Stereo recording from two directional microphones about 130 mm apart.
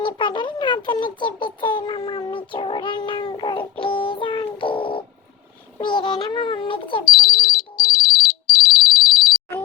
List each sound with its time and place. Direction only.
0.0 s a sound: 35° left (ahead or behind)
5.8 s a child's voice: 35° left (ahead or behind)
7.2 s ringtone: 30° left (ahead or behind)